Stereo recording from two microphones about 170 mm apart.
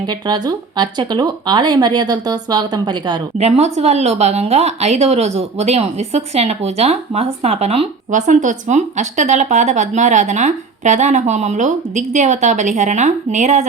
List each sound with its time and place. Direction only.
0.0 s speech: 25° right (ahead or behind)
3.3 s speech: 40° right (ahead or behind)